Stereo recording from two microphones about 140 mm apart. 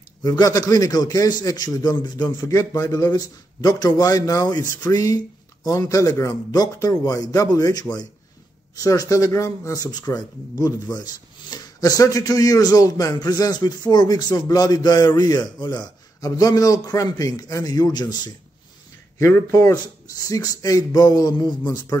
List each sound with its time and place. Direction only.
0.2 s a man's voice: 25° left (ahead or behind)